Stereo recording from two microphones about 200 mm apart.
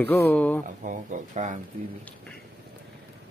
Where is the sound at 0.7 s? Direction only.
40° right (ahead or behind).